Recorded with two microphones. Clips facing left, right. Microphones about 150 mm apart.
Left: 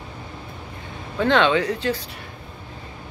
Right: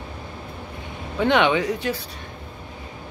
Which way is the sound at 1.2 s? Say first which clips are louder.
Left 1 dB; 15° right (ahead or behind).